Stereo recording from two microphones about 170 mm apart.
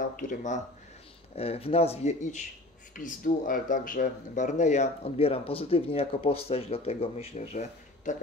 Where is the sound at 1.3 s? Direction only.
35° left (ahead or behind).